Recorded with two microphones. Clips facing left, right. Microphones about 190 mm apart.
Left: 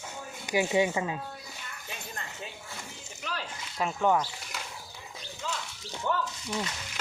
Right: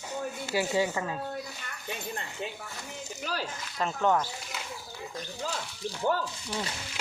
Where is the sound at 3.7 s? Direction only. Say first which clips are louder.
Even; 10° left (ahead or behind).